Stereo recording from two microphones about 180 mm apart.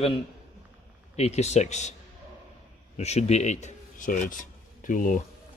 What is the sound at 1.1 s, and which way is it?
Speech, 40° left (ahead or behind).